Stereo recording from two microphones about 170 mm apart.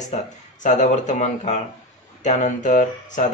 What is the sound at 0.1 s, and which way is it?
Speech, 45° left (ahead or behind).